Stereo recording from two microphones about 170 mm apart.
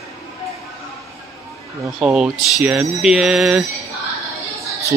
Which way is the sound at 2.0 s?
5° right (ahead or behind).